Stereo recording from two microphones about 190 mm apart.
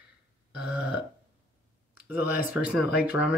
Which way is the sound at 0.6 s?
5° right (ahead or behind).